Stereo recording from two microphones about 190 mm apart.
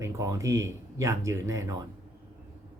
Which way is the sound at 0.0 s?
15° right (ahead or behind).